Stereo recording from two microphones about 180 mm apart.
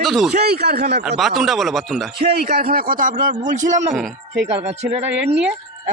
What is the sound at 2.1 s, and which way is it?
Speech, 60° right (ahead or behind).